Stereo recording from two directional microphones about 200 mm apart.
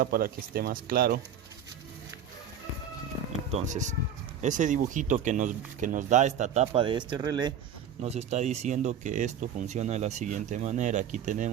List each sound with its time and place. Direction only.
0.0 s speech: 45° right (ahead or behind)
3.5 s speech: 35° right (ahead or behind); by 7.5 s 20° right (ahead or behind)
8.0 s speech: 30° right (ahead or behind)